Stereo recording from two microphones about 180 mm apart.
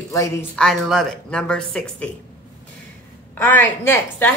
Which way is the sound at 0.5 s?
Centre (ahead or behind).